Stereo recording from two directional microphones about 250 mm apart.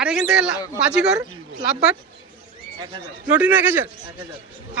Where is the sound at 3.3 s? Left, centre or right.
Centre.